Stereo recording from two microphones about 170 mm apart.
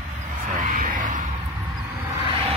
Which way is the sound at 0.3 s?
50° right (ahead or behind).